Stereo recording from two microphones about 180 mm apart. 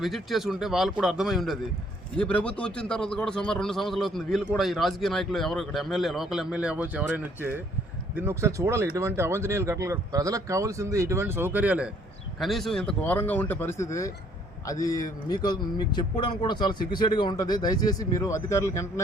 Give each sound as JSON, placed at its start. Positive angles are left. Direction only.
{"t": 0.0, "sound": "a man's voice", "side_deg": 0}